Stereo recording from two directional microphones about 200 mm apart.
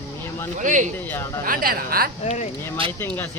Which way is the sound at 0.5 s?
40° right (ahead or behind).